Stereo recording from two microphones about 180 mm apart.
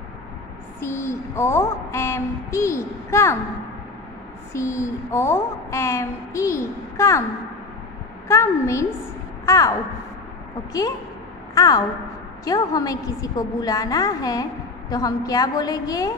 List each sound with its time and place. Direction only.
0.7 s a woman's voice: 15° left (ahead or behind)
4.5 s a woman's voice: 15° left (ahead or behind)
8.3 s a woman's voice: 15° left (ahead or behind)
11.5 s a woman's voice: 20° left (ahead or behind)